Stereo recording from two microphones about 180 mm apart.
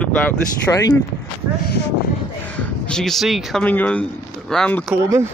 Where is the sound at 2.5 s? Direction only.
5° left (ahead or behind).